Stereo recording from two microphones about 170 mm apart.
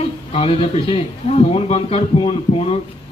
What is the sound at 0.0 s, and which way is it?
Speech, 35° left (ahead or behind).